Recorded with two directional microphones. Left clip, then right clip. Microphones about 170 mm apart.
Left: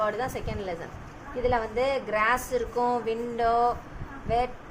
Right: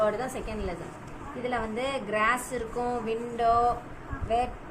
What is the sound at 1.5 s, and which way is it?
A woman's voice, 60° left (ahead or behind).